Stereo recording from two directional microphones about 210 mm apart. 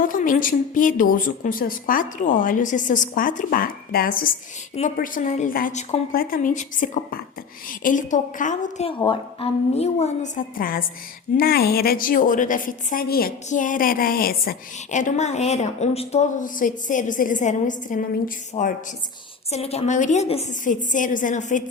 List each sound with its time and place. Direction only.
0.0 s a woman's voice: 40° left (ahead or behind)